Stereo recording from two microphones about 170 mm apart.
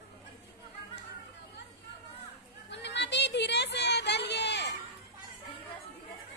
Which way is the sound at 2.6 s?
90° left.